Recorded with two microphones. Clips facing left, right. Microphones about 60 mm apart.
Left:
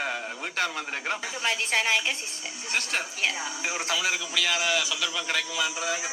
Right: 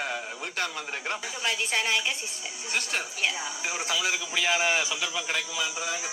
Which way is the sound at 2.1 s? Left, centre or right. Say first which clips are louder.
Even; centre.